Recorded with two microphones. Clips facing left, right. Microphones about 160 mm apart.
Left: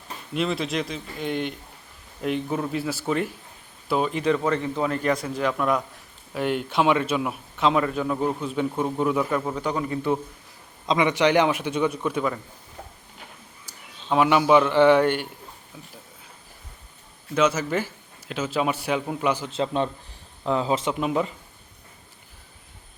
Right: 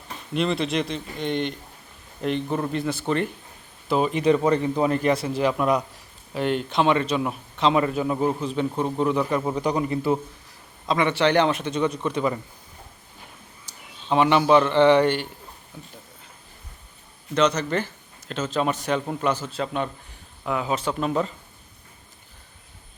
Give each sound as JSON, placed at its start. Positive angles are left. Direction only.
{"t": 0.3, "sound": "a man's voice", "side_deg": 0}
{"t": 4.3, "sound": "a man's voice", "side_deg": -20}
{"t": 5.5, "sound": "a man's voice", "side_deg": -5}
{"t": 6.3, "sound": "a man's voice", "side_deg": 5}
{"t": 9.4, "sound": "a man's voice", "side_deg": -10}
{"t": 10.8, "sound": "a man's voice", "side_deg": 15}
{"t": 14.1, "sound": "a man's voice", "side_deg": 5}
{"t": 17.3, "sound": "a man's voice", "side_deg": 5}
{"t": 21.0, "sound": "a man's voice", "side_deg": 10}